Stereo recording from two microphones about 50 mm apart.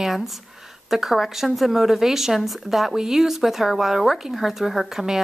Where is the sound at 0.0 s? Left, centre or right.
Centre.